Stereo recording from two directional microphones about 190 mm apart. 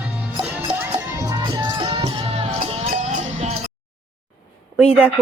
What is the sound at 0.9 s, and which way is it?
Music, 20° right (ahead or behind).